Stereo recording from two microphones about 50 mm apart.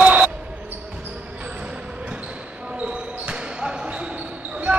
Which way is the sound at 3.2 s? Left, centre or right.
Centre.